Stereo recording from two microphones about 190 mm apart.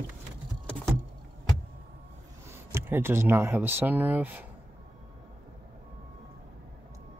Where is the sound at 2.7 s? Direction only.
10° right (ahead or behind).